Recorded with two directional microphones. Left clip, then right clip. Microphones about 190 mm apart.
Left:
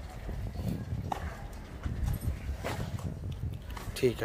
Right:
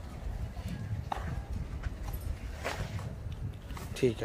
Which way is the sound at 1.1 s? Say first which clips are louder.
Left 1 dB; 55° left (ahead or behind).